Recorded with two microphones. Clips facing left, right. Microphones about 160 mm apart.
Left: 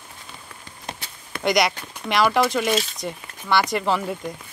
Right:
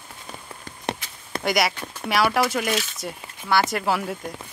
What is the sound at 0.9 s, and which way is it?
Walk, 70° right (ahead or behind).